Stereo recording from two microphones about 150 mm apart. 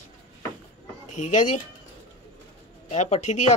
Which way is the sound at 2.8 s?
50° left (ahead or behind).